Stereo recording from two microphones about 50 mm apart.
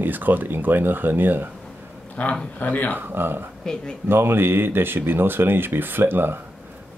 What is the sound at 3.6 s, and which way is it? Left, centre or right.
Speech, centre.